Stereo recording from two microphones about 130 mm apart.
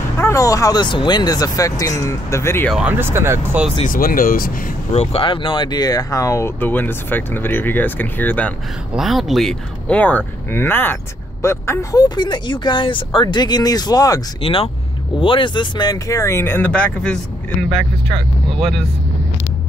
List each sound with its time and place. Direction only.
0.2 s speech: 25° left (ahead or behind)
2.9 s speech: 15° right (ahead or behind)
3.8 s speech: 90° left
4.9 s speech: 45° left (ahead or behind); by 8.5 s 10° left (ahead or behind)
8.9 s speech: centre (ahead or behind); by 12.0 s 20° left (ahead or behind)
12.0 s speech: 35° left (ahead or behind)
14.4 s speech: 45° left (ahead or behind); by 18.9 s centre (ahead or behind)